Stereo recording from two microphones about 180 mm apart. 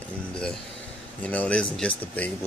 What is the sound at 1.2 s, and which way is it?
Speech, 5° left (ahead or behind).